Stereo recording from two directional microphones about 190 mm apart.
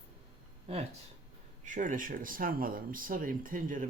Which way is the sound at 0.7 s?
35° right (ahead or behind).